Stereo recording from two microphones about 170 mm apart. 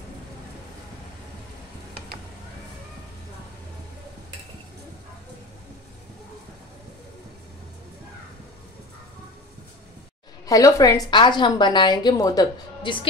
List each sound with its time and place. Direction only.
10.4 s a woman's voice: 20° left (ahead or behind)